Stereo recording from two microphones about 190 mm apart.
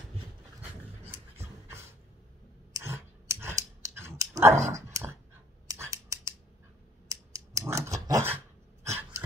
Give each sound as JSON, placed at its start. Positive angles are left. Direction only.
{"t": 1.0, "sound": "pant", "side_deg": -10}
{"t": 2.7, "sound": "clicking", "side_deg": -15}
{"t": 5.7, "sound": "a sound", "side_deg": -15}
{"t": 7.1, "sound": "scissors", "side_deg": -15}
{"t": 8.8, "sound": "dog", "side_deg": -15}